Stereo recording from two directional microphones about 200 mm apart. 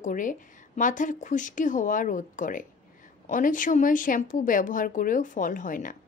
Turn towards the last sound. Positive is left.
turn(degrees=40)  # may be behind; listen again after turning